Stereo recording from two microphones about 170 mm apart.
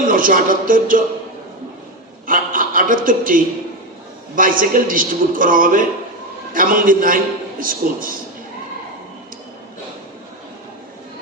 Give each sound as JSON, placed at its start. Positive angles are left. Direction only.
{"t": 0.1, "sound": "a man's voice", "side_deg": -55}
{"t": 2.2, "sound": "a man's voice", "side_deg": -55}